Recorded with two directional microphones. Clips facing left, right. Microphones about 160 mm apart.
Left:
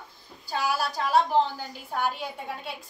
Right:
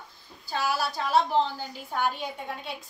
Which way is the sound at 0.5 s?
10° left (ahead or behind).